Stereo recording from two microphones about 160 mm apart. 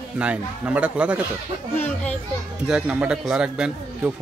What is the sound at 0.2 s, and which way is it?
Speech, 5° right (ahead or behind).